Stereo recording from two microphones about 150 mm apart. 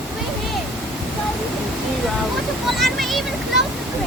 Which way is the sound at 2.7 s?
Centre (ahead or behind).